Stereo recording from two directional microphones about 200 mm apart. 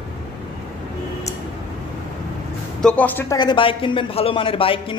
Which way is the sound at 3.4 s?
25° left (ahead or behind).